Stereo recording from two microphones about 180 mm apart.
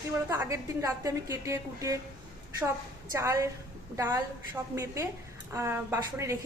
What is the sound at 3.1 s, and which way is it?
A woman's voice, 15° right (ahead or behind).